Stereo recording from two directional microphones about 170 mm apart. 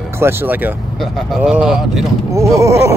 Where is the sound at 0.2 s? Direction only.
15° right (ahead or behind).